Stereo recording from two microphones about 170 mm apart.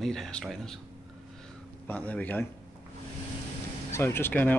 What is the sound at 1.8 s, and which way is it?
Speech, 10° left (ahead or behind).